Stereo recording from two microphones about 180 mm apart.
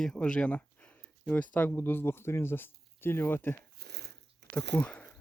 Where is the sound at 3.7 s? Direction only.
65° right (ahead or behind).